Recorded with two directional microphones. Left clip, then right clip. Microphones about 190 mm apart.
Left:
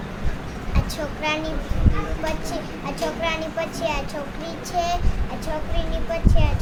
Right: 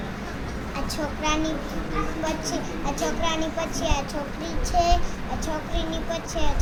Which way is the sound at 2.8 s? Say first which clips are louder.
Left 2 dB; 15° left (ahead or behind).